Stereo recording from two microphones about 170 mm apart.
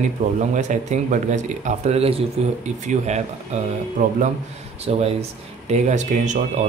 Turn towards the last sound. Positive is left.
turn(degrees=-45)  # may be behind; listen again after turning